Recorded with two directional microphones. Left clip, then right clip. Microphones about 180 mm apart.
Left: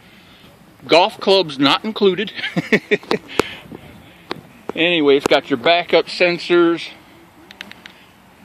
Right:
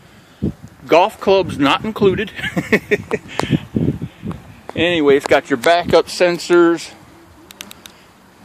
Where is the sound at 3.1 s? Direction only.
5° left (ahead or behind).